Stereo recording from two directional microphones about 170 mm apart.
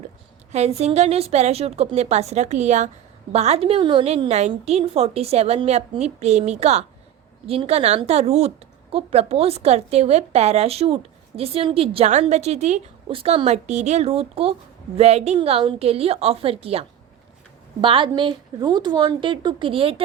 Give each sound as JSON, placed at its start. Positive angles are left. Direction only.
{"t": 0.8, "sound": "a woman's voice", "side_deg": -40}